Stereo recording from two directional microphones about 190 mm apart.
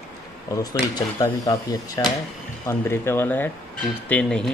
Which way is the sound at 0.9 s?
20° left (ahead or behind).